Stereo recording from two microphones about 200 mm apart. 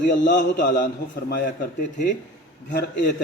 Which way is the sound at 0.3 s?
40° left (ahead or behind).